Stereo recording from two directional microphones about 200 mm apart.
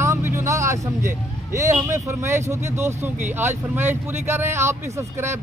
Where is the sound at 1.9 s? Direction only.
10° right (ahead or behind).